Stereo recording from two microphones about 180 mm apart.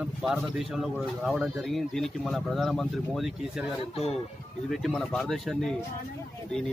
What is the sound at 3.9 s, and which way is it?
Speech, 35° left (ahead or behind).